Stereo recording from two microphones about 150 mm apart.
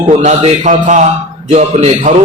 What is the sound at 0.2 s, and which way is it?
A man's voice, 50° right (ahead or behind).